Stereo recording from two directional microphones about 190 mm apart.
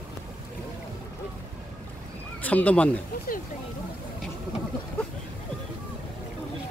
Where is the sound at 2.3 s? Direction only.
10° left (ahead or behind).